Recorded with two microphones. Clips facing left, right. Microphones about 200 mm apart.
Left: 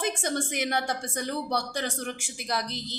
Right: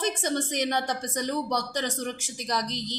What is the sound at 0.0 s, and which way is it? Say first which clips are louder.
A woman's voice: right 1 dB; 10° left (ahead or behind).